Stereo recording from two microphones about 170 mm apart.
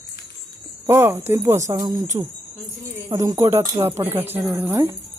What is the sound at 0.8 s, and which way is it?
Speech, 15° right (ahead or behind).